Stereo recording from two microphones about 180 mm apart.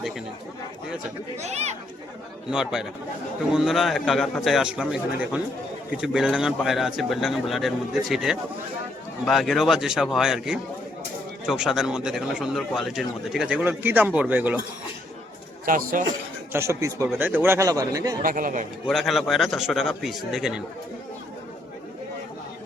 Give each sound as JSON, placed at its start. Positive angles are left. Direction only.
{"t": 1.4, "sound": "speech", "side_deg": -35}
{"t": 2.5, "sound": "speech", "side_deg": -5}
{"t": 15.6, "sound": "speech", "side_deg": -50}
{"t": 16.5, "sound": "speech", "side_deg": -15}
{"t": 18.2, "sound": "speech", "side_deg": -50}
{"t": 18.9, "sound": "speech", "side_deg": 0}